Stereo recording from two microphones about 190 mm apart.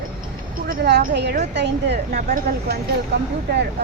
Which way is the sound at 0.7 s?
55° right (ahead or behind).